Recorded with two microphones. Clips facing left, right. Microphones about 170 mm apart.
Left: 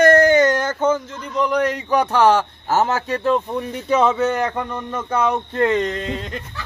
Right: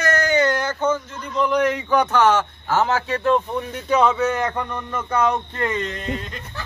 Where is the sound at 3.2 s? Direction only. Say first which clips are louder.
Even; 5° left (ahead or behind).